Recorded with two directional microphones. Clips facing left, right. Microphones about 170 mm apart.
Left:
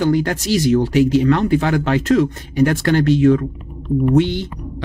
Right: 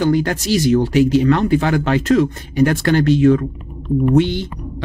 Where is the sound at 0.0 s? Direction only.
35° right (ahead or behind).